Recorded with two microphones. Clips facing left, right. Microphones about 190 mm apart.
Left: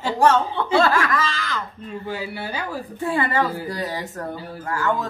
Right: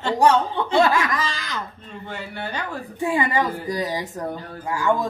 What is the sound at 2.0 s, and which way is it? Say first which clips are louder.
Speech: left 1 dB; 5° left (ahead or behind).